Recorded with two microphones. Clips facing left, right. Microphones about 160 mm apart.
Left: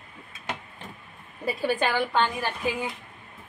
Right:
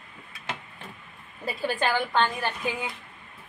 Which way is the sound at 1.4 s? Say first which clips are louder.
Left 2 dB; 15° left (ahead or behind).